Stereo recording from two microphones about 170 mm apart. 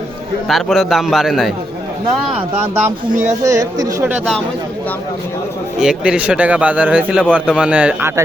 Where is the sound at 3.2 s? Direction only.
20° right (ahead or behind).